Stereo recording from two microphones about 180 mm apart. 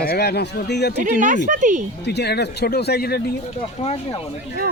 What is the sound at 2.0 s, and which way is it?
Speech, 65° left (ahead or behind).